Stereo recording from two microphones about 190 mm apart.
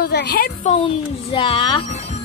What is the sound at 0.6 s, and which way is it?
A child's voice, 30° left (ahead or behind).